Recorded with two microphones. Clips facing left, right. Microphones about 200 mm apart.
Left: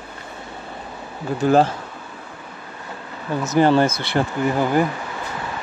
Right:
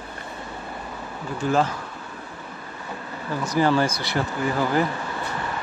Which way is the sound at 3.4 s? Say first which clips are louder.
Left 5 dB; 25° left (ahead or behind).